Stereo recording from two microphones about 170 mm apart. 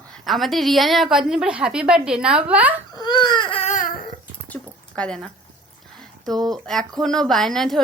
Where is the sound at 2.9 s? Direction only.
25° left (ahead or behind).